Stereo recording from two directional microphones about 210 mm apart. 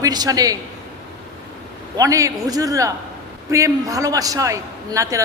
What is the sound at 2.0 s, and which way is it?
A man's voice, 15° right (ahead or behind).